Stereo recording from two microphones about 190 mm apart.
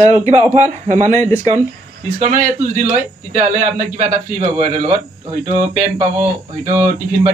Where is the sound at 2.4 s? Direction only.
40° right (ahead or behind).